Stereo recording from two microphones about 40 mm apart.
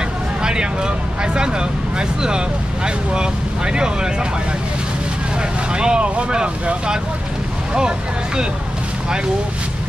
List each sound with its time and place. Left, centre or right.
0.4 s speech: centre
5.7 s speech: right